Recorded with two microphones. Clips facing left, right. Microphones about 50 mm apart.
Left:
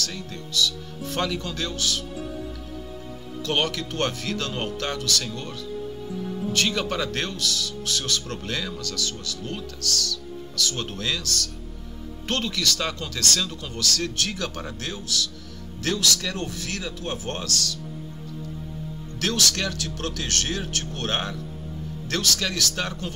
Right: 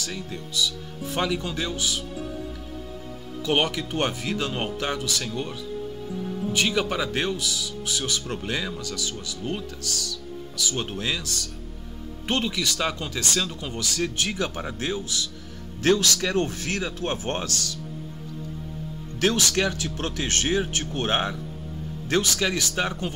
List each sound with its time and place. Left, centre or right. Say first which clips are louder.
0.6 s speech: left 2 dB; centre
3.4 s speech: right 2 dB; centre
6.0 s music: even; centre
6.5 s speech: right 1 dB; centre; by 17.7 s right
19.2 s speech: right 3 dB; right